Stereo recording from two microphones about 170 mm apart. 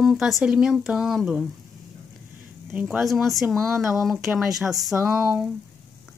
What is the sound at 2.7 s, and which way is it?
Speech, 5° right (ahead or behind).